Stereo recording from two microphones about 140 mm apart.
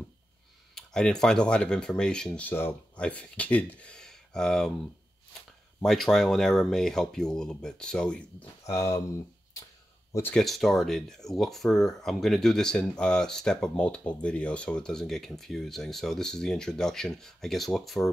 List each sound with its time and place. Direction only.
0.7 s speech: 5° left (ahead or behind)
5.8 s speech: centre (ahead or behind)
8.6 s speech: 20° left (ahead or behind)
10.3 s speech: centre (ahead or behind)